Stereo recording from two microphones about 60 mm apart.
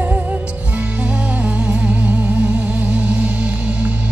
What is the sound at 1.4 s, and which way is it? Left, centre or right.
Music, centre.